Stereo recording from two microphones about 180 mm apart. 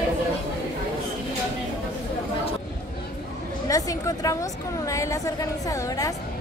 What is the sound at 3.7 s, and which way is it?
A woman's voice, 20° left (ahead or behind).